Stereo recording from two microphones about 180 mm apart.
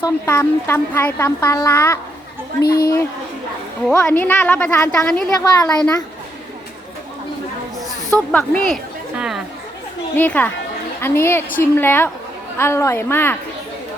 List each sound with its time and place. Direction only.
0.3 s a woman's voice: 15° left (ahead or behind)
2.6 s a man's voice: 60° left (ahead or behind)
4.0 s a woman's voice: 10° left (ahead or behind)
8.3 s speech: 5° left (ahead or behind)
10.2 s a woman's voice: 10° left (ahead or behind)